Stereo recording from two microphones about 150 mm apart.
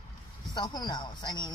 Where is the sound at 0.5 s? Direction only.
25° left (ahead or behind).